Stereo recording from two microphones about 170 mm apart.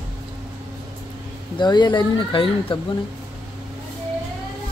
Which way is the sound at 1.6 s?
25° left (ahead or behind).